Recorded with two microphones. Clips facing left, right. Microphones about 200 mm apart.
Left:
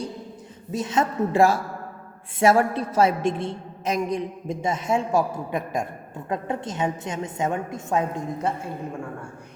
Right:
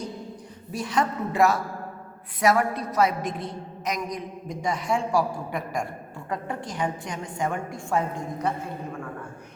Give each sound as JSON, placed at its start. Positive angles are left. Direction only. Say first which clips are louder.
{"t": 0.7, "sound": "a woman's voice", "louder": "left 2 dB", "side_deg": 20}